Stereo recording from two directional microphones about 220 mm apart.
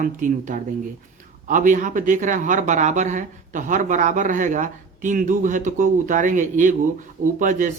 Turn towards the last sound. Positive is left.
turn(degrees=-35)  # may be behind; listen again after turning